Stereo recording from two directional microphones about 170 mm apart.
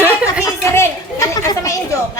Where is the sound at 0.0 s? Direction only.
5° right (ahead or behind).